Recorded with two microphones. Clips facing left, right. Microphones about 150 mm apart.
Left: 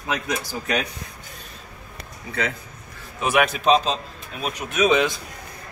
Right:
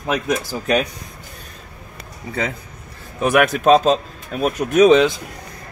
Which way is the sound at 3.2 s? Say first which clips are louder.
Right 5 dB; 50° right (ahead or behind).